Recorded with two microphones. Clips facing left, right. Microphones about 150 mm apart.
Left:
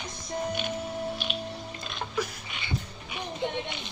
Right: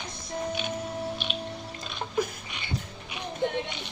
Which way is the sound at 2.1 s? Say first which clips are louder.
Right 4 dB; 50° right (ahead or behind).